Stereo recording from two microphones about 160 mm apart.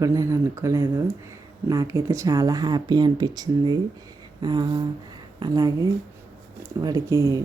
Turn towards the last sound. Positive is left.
turn(degrees=-20)  # may be behind; listen again after turning